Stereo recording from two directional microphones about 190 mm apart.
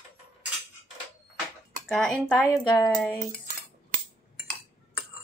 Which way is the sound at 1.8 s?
Centre (ahead or behind).